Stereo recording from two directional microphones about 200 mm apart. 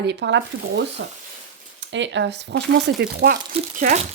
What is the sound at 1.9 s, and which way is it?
Speech, 65° right (ahead or behind).